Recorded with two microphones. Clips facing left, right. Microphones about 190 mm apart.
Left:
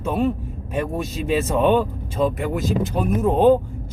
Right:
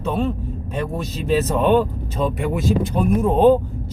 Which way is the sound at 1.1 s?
40° right (ahead or behind).